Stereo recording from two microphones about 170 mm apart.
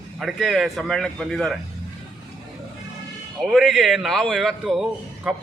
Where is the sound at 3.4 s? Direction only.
Centre (ahead or behind).